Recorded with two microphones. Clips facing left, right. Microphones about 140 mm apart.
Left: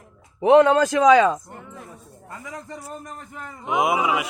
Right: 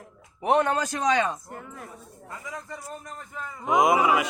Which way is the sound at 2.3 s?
40° left (ahead or behind).